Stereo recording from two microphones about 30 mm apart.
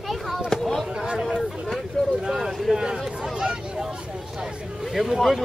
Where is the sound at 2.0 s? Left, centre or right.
Centre.